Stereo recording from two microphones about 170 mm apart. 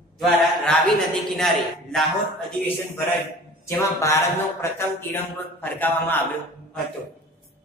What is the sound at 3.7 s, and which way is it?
Speech, 15° left (ahead or behind).